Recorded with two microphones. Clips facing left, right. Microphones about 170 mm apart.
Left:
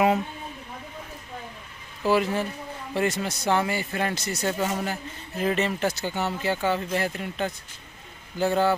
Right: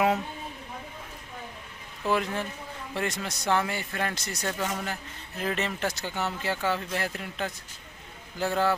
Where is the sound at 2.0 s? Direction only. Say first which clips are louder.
Left 5 dB; 5° left (ahead or behind).